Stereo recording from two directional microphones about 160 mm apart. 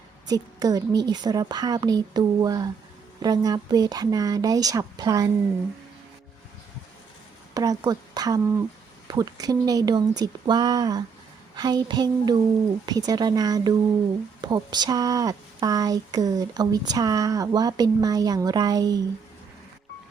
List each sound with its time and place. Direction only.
0.3 s speech: 25° right (ahead or behind)
7.5 s speech: 20° right (ahead or behind)